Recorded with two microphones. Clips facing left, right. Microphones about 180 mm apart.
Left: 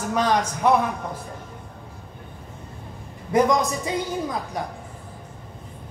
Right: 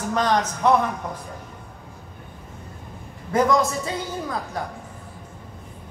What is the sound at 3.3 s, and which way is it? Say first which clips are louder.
A man's voice: even; 20° left (ahead or behind).